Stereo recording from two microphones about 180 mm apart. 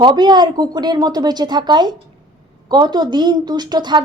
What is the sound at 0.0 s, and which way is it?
Speech, 25° right (ahead or behind).